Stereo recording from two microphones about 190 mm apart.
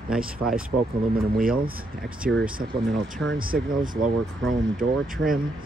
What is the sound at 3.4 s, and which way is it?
Speech, 50° right (ahead or behind).